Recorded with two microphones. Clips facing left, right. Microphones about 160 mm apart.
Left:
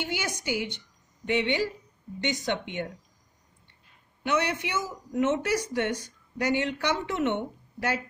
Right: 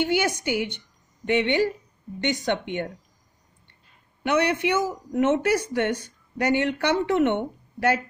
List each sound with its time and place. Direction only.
0.0 s speech: 60° right (ahead or behind)
4.2 s speech: 60° right (ahead or behind)